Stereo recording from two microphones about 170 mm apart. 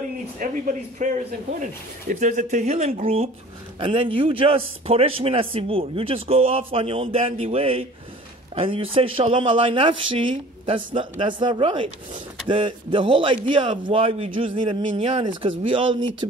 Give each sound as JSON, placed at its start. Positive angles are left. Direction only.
{"t": 0.4, "sound": "a man's voice", "side_deg": -50}